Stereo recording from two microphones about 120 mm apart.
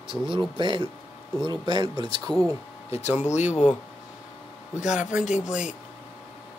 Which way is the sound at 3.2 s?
75° left (ahead or behind).